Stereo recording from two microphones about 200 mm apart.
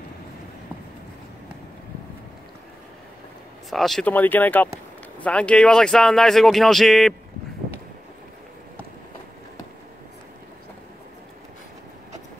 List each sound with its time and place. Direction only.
3.7 s speech: centre (ahead or behind)